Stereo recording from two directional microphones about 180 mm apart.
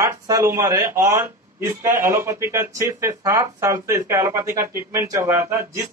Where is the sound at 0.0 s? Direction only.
15° right (ahead or behind).